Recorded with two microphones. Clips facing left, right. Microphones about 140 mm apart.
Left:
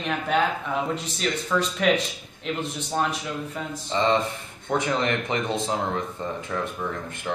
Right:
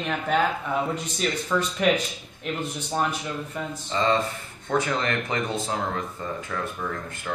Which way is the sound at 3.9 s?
20° left (ahead or behind).